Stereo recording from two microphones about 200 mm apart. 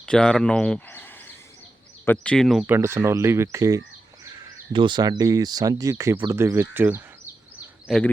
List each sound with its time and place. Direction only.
0.0 s speech: 5° left (ahead or behind)
7.9 s speech: centre (ahead or behind)